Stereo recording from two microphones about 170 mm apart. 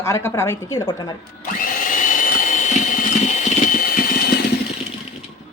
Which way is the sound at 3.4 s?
55° left (ahead or behind).